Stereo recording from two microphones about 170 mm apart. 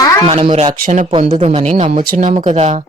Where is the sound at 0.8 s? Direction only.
50° right (ahead or behind).